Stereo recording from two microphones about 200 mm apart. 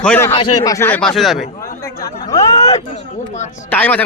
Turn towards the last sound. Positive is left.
turn(degrees=10)  # may be behind; listen again after turning